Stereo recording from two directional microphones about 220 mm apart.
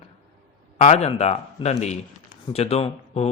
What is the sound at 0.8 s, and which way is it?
A man's voice, 30° left (ahead or behind).